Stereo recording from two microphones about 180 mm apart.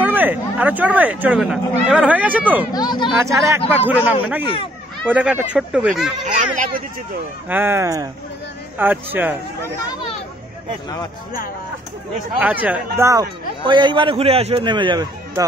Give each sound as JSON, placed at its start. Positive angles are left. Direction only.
{"t": 0.0, "sound": "speech", "side_deg": -10}
{"t": 2.7, "sound": "speech", "side_deg": 25}
{"t": 3.3, "sound": "speech", "side_deg": -15}
{"t": 6.2, "sound": "speech", "side_deg": -45}
{"t": 7.4, "sound": "speech", "side_deg": -10}
{"t": 9.8, "sound": "speech", "side_deg": 25}
{"t": 12.4, "sound": "a man's voice", "side_deg": -5}